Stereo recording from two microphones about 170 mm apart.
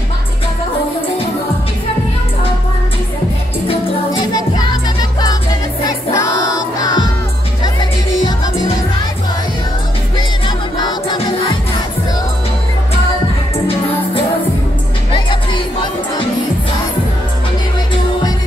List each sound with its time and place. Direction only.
4.3 s music: 25° left (ahead or behind)
5.9 s music: 20° left (ahead or behind)
10.8 s music: 25° left (ahead or behind)
15.1 s music: 30° left (ahead or behind)